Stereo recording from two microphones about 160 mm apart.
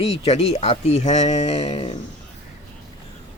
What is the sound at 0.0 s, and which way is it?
Speech, 40° left (ahead or behind).